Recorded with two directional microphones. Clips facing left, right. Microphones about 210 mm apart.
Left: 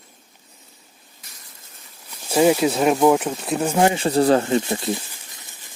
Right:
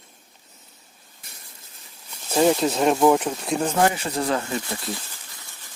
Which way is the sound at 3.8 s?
25° left (ahead or behind).